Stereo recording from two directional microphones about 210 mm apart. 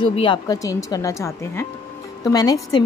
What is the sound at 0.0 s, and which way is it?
A woman's voice, 25° left (ahead or behind).